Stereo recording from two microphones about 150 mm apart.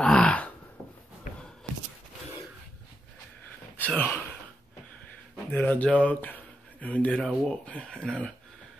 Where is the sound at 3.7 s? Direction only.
10° left (ahead or behind).